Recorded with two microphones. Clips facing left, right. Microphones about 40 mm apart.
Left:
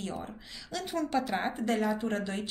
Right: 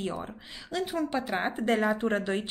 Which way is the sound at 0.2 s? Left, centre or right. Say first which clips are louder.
Right 2 dB; right.